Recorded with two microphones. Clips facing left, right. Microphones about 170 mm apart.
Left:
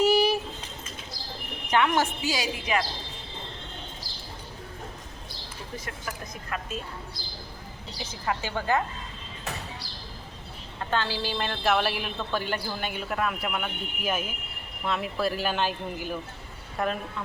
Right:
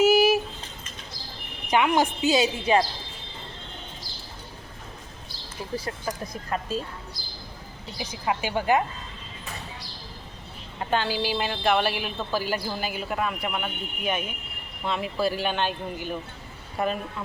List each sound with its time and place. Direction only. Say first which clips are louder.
0.0 s a sound: right 3 dB; 5° right (ahead or behind)
1.6 s speech: right 2 dB; 10° right (ahead or behind)
5.7 s speech: right 6 dB; 35° right (ahead or behind)
7.9 s speech: right 3 dB; 15° right (ahead or behind)
10.8 s a woman's voice: right 3 dB; 15° right (ahead or behind)